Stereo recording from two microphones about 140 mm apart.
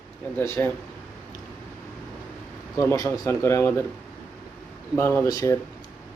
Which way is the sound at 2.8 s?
20° left (ahead or behind).